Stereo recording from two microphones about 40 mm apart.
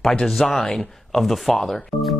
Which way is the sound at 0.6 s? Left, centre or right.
Left.